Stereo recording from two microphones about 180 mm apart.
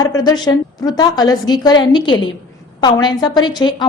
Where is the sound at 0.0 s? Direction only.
20° left (ahead or behind).